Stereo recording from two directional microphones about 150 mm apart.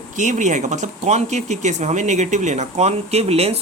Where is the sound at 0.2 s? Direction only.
55° right (ahead or behind).